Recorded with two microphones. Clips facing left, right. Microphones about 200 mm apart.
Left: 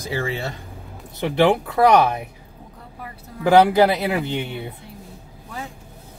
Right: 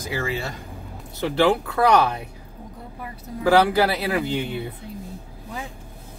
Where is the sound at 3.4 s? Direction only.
20° left (ahead or behind).